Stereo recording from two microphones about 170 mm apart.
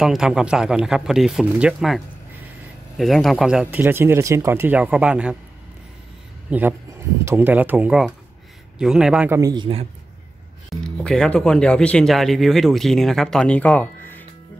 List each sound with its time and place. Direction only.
0.0 s speech: 5° right (ahead or behind)
6.5 s speech: 10° right (ahead or behind)
9.3 s speech: 20° right (ahead or behind)
10.7 s speech: 5° left (ahead or behind)